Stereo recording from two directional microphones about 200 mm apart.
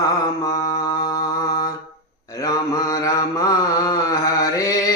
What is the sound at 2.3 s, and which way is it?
Mantra, 15° left (ahead or behind).